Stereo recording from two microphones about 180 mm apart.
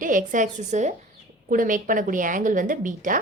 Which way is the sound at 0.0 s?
45° right (ahead or behind).